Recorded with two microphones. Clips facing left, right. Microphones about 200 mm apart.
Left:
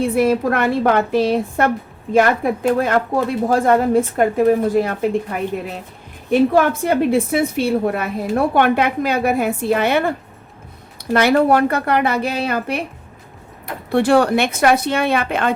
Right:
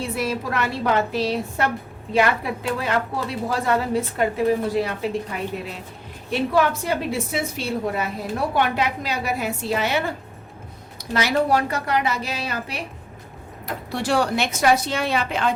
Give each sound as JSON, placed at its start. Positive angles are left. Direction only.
{"t": 0.0, "sound": "a woman's voice", "side_deg": 55}
{"t": 13.9, "sound": "a woman's voice", "side_deg": 55}